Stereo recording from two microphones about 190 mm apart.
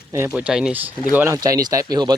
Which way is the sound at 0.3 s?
5° right (ahead or behind).